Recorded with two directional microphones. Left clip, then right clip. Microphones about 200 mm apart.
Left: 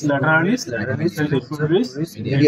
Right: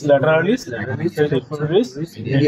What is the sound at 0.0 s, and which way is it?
Speech, 45° right (ahead or behind).